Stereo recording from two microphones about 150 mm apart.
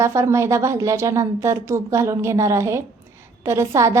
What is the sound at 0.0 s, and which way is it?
A woman's voice, 20° right (ahead or behind).